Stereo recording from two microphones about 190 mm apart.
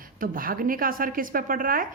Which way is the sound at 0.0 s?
50° right (ahead or behind).